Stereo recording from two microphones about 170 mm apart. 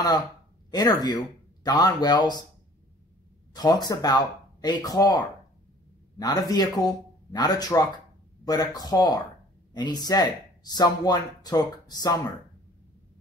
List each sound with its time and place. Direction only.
0.7 s speech: 25° left (ahead or behind)
3.5 s speech: 25° left (ahead or behind)